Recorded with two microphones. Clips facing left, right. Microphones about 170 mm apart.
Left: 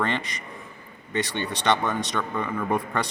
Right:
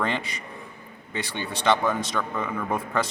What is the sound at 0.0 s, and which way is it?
A man's voice, 5° right (ahead or behind).